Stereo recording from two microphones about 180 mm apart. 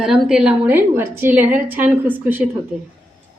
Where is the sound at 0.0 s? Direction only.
5° right (ahead or behind).